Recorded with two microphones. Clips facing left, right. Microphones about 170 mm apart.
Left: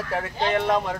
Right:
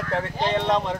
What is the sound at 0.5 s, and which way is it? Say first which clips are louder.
Speech: even; 25° right (ahead or behind).